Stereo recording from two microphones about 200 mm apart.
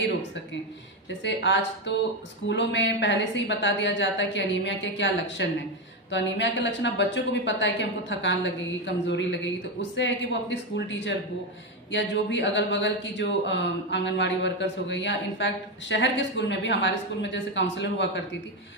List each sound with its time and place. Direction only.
1.2 s speech: 60° left (ahead or behind)